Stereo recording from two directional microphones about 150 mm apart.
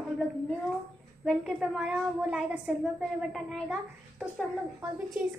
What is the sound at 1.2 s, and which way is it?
A child's voice, 5° right (ahead or behind).